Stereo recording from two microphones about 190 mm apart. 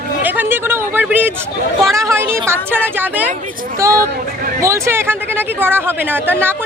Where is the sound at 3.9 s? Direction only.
50° right (ahead or behind).